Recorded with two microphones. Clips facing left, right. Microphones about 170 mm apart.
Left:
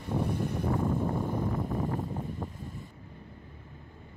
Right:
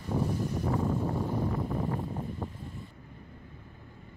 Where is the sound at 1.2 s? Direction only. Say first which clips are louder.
Even; 50° left (ahead or behind).